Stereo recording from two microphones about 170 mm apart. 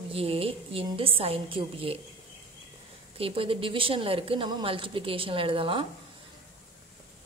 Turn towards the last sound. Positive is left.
turn(degrees=-30)  # may be behind; listen again after turning